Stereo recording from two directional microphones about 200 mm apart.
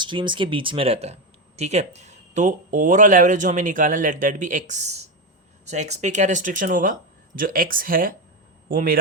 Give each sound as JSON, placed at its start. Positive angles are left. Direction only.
{"t": 0.0, "sound": "speech", "side_deg": -25}